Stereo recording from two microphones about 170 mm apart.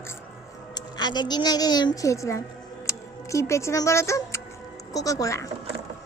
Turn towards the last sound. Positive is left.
turn(degrees=20)  # may be behind; listen again after turning